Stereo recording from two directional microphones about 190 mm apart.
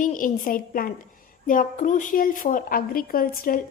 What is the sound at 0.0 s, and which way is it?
A woman's voice, 45° left (ahead or behind).